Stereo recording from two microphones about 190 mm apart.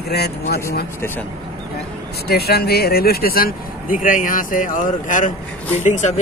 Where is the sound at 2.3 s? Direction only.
55° left (ahead or behind); by 6.1 s 40° left (ahead or behind).